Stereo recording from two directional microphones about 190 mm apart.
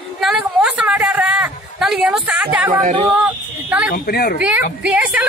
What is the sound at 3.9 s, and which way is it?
Speech, 55° left (ahead or behind).